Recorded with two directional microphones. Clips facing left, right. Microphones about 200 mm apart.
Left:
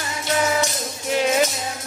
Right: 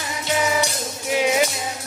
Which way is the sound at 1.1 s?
10° right (ahead or behind).